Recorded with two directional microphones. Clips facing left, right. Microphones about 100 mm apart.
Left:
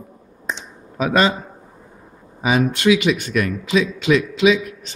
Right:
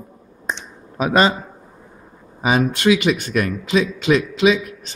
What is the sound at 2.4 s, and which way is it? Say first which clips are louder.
A man's voice: even; 40° right (ahead or behind).